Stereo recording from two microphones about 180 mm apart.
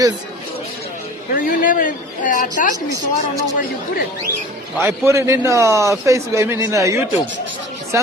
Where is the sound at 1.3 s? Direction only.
50° left (ahead or behind).